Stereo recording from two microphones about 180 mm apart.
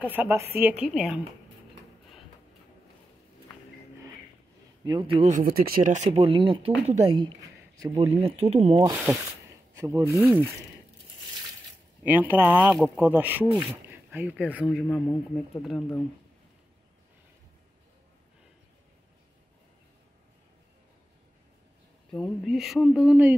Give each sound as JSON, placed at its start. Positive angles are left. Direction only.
{"t": 0.0, "sound": "speech", "side_deg": -10}
{"t": 4.8, "sound": "a man's voice", "side_deg": -25}
{"t": 5.2, "sound": "speech", "side_deg": -45}
{"t": 7.9, "sound": "speech", "side_deg": -35}
{"t": 9.8, "sound": "speech", "side_deg": -15}
{"t": 12.0, "sound": "speech", "side_deg": -10}
{"t": 13.6, "sound": "a sound", "side_deg": -10}
{"t": 14.5, "sound": "speech", "side_deg": -5}
{"t": 22.1, "sound": "speech", "side_deg": 0}